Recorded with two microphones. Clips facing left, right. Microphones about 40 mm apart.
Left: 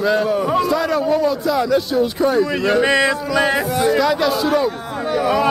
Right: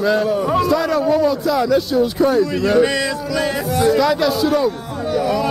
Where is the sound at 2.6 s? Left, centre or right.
Centre.